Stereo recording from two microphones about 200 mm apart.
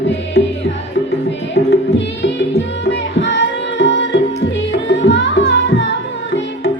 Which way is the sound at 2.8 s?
65° left (ahead or behind).